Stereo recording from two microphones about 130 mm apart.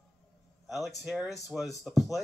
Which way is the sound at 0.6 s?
Centre (ahead or behind).